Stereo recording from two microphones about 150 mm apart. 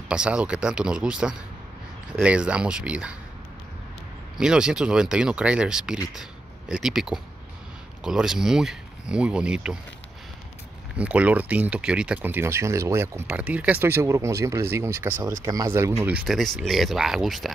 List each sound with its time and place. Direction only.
0.1 s speech: 5° right (ahead or behind)
4.4 s speech: 5° right (ahead or behind)
11.0 s speech: 10° right (ahead or behind)
16.3 s speech: centre (ahead or behind)